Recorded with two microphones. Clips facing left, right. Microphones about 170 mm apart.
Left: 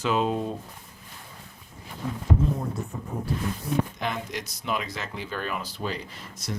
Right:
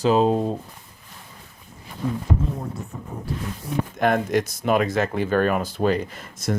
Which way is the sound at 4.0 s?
50° right (ahead or behind).